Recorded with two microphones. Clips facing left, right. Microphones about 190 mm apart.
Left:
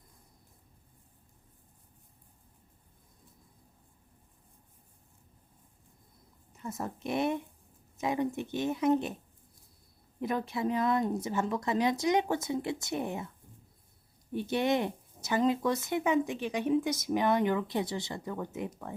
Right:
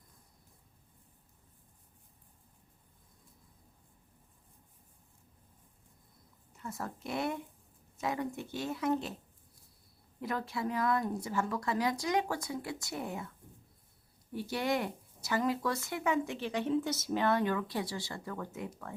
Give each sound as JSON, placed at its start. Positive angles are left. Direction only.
{"t": 6.6, "sound": "speech", "side_deg": 20}
{"t": 10.2, "sound": "speech", "side_deg": 20}
{"t": 14.3, "sound": "speech", "side_deg": 20}